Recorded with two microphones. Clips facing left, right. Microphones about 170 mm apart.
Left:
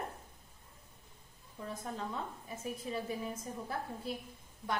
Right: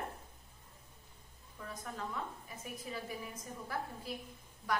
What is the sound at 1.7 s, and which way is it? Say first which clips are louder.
A woman's voice: left 2 dB; 25° left (ahead or behind).